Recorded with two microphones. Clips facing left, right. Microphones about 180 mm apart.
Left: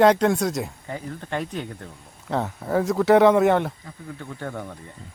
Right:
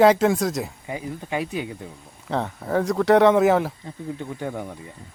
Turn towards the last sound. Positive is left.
turn(degrees=-10)  # may be behind; listen again after turning